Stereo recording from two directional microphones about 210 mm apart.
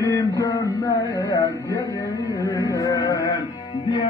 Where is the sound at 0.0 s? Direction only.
15° left (ahead or behind).